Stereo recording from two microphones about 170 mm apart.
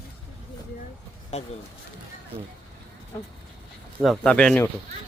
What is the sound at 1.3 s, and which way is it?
Speech, 40° left (ahead or behind).